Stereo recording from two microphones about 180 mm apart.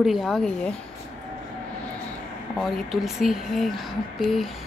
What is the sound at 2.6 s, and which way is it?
Speech, centre (ahead or behind).